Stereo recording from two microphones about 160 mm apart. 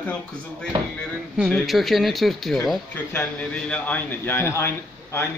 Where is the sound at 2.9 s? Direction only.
10° left (ahead or behind).